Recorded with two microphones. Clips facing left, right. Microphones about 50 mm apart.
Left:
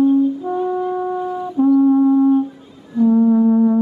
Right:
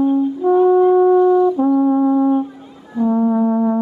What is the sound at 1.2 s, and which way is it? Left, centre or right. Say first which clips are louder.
Brass instrument: right 11 dB; centre.